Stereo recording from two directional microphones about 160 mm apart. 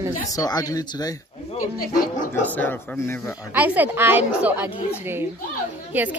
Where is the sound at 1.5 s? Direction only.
55° left (ahead or behind).